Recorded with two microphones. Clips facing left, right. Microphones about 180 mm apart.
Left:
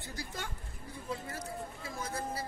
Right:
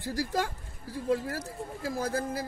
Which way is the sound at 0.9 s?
85° right.